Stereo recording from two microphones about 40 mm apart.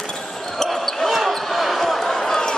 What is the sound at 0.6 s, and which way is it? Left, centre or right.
Basketball bounce, centre.